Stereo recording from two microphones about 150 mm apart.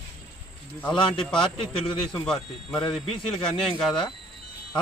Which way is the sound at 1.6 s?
30° left (ahead or behind).